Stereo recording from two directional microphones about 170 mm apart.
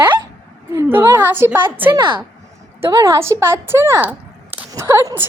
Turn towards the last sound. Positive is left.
turn(degrees=-15)  # may be behind; listen again after turning